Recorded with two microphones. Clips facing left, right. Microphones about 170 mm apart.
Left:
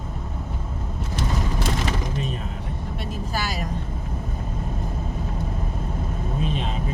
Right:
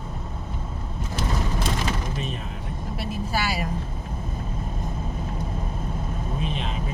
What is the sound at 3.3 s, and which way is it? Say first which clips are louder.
Vehicle: right 2 dB; 5° right (ahead or behind).